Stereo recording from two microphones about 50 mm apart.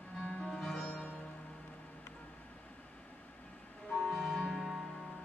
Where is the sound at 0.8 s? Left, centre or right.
Left.